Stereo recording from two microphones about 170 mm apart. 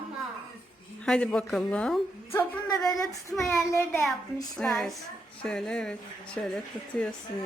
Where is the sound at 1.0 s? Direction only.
5° left (ahead or behind).